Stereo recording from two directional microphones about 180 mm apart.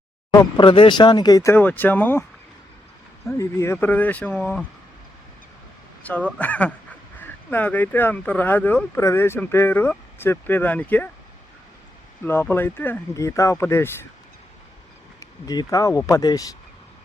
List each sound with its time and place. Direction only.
0.3 s speech: 25° left (ahead or behind); by 2.2 s 10° left (ahead or behind)
3.2 s speech: 15° left (ahead or behind)
6.0 s speech: 10° left (ahead or behind)
12.2 s speech: 10° left (ahead or behind)
15.2 s speech: 20° left (ahead or behind)